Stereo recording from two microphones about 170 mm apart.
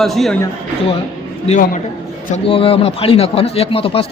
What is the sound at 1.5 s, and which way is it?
Speech, 50° left (ahead or behind).